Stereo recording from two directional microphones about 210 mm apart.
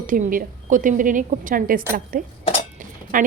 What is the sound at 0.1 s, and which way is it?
A woman's voice, 40° right (ahead or behind).